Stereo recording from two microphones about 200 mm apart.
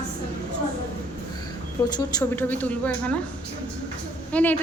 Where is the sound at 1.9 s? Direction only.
20° left (ahead or behind).